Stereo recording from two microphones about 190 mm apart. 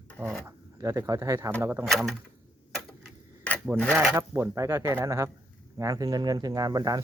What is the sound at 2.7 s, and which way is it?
Clock, 5° left (ahead or behind).